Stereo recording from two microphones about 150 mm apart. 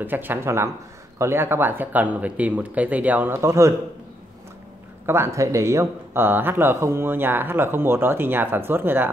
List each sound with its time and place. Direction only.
0.0 s speech: 15° right (ahead or behind)
5.0 s speech: 15° right (ahead or behind)